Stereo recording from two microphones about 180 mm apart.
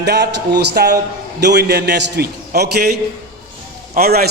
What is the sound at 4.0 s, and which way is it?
Speech, 60° right (ahead or behind).